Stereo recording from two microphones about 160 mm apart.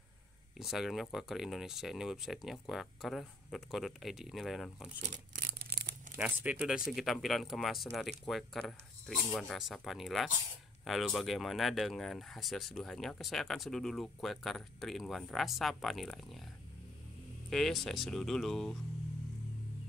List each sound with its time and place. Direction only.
0.6 s speech: centre (ahead or behind)
5.5 s a sound: 90° right
6.1 s speech: 10° right (ahead or behind)
17.5 s speech: centre (ahead or behind)